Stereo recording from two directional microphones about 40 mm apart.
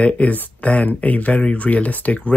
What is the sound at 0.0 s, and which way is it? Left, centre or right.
Speech, left.